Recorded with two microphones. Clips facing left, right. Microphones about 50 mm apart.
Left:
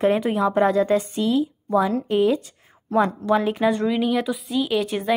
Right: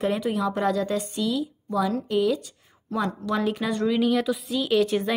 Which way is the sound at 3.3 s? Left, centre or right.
Centre.